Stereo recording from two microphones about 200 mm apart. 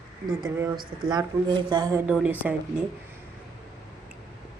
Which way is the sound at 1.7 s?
20° right (ahead or behind).